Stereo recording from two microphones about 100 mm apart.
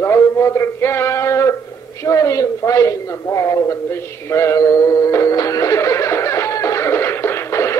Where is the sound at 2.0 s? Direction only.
30° left (ahead or behind).